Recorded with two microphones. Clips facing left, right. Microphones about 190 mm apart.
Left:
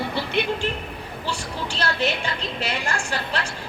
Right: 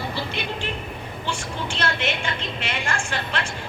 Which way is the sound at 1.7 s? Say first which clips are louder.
Left 2 dB; 35° left (ahead or behind).